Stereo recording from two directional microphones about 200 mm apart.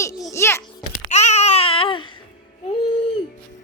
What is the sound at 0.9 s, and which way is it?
Babbling, 35° left (ahead or behind).